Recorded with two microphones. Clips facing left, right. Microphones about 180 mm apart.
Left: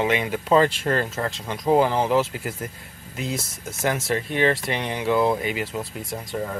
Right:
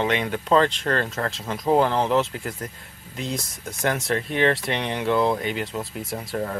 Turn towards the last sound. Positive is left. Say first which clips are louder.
# right 1 dB
turn(degrees=0)  # may be behind; listen again after turning